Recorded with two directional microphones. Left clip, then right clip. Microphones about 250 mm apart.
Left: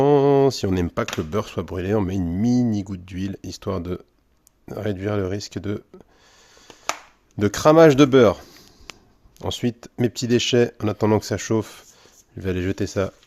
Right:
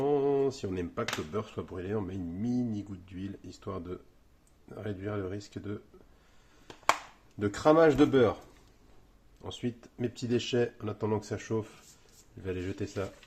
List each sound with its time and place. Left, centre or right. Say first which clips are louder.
0.0 s a sound: left 12 dB; left
1.3 s speech: left 11 dB; left
7.3 s speech: left 10 dB; left
9.4 s speech: left 12 dB; left